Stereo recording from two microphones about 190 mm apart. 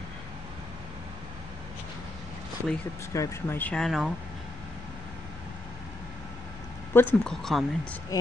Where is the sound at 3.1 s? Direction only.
10° left (ahead or behind).